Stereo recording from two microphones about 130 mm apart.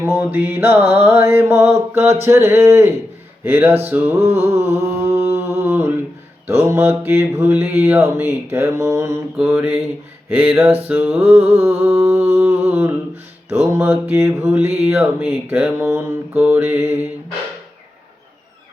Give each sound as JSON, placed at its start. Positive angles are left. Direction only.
{"t": 0.0, "sound": "mantra", "side_deg": -15}
{"t": 10.8, "sound": "mantra", "side_deg": -10}
{"t": 12.0, "sound": "humming", "side_deg": -15}
{"t": 13.7, "sound": "mantra", "side_deg": -20}